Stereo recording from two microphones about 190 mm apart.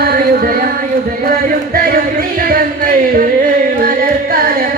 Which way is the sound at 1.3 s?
50° right (ahead or behind).